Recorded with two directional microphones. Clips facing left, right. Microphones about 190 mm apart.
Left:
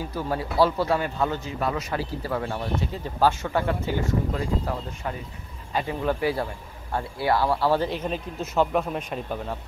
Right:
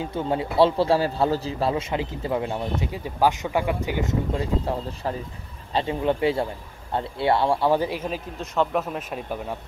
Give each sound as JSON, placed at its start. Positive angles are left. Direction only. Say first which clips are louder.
{"t": 0.0, "sound": "speech", "louder": "right 3 dB", "side_deg": -25}